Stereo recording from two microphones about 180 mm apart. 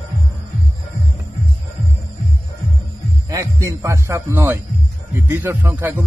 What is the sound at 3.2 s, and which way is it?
Speech, 20° right (ahead or behind).